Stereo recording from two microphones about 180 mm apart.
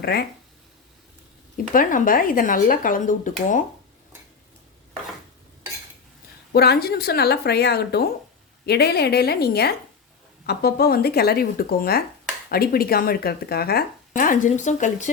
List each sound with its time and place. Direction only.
0.0 s speech: 60° left (ahead or behind)
1.5 s speech: 50° left (ahead or behind)
6.5 s speech: 60° left (ahead or behind)
14.1 s speech: 45° left (ahead or behind)